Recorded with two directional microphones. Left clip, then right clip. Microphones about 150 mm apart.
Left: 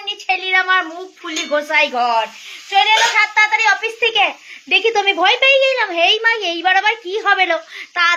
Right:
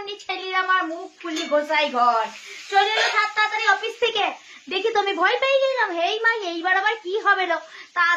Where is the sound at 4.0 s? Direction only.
Centre (ahead or behind).